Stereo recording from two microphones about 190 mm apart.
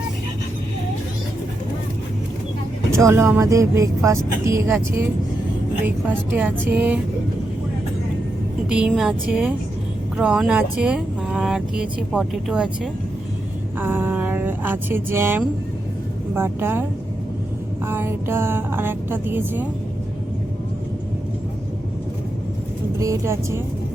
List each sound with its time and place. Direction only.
2.9 s music: 15° right (ahead or behind)
8.7 s speech: 5° right (ahead or behind)
16.3 s music: 10° right (ahead or behind)
17.8 s music: 10° right (ahead or behind)
23.0 s music: 15° right (ahead or behind)